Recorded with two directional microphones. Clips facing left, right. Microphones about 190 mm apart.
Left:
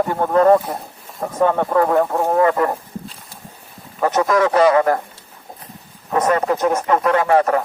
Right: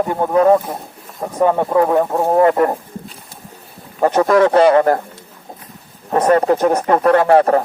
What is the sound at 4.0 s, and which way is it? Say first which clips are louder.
Speech: right 4 dB; 30° right (ahead or behind).